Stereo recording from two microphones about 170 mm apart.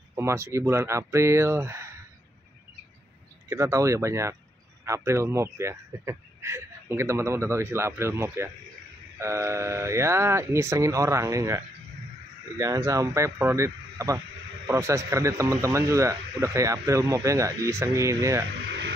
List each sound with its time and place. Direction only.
0.1 s speech: 15° right (ahead or behind)
3.4 s speech: 15° right (ahead or behind)
18.7 s a sound: 90° right